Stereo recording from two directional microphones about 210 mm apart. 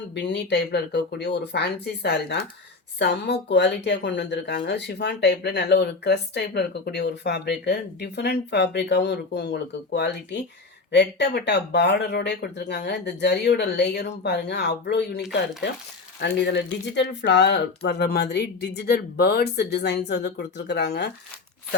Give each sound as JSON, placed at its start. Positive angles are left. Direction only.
{"t": 0.1, "sound": "speech", "side_deg": 55}